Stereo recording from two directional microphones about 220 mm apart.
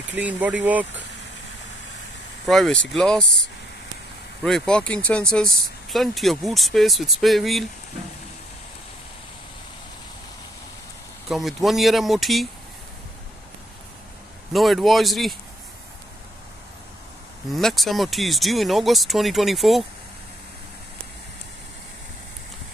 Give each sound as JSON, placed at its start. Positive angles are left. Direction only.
{"t": 0.1, "sound": "speech", "side_deg": -5}
{"t": 2.4, "sound": "speech", "side_deg": 0}
{"t": 4.4, "sound": "speech", "side_deg": 0}
{"t": 11.2, "sound": "speech", "side_deg": 0}
{"t": 14.5, "sound": "speech", "side_deg": 0}
{"t": 17.5, "sound": "speech", "side_deg": 0}